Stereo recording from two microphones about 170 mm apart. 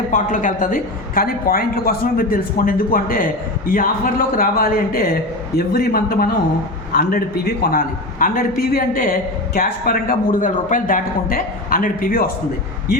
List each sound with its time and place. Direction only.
0.1 s a woman's voice: 50° left (ahead or behind)